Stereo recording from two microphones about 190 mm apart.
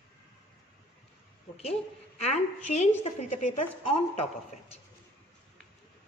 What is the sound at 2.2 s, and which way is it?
A woman's voice, 35° left (ahead or behind).